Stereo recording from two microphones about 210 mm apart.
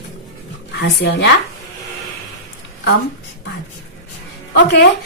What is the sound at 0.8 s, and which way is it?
Speech, 55° left (ahead or behind).